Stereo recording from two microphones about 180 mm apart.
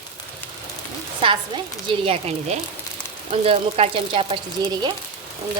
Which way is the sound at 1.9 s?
30° right (ahead or behind).